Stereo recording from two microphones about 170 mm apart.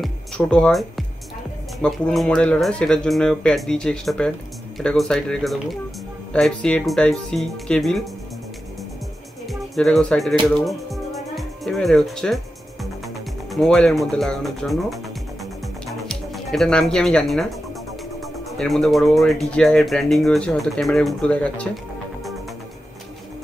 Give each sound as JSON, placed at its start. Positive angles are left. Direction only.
{"t": 0.0, "sound": "speech", "side_deg": 5}
{"t": 9.5, "sound": "speech", "side_deg": 5}
{"t": 10.4, "sound": "music", "side_deg": 0}
{"t": 13.5, "sound": "speech", "side_deg": 0}
{"t": 16.1, "sound": "speech", "side_deg": 0}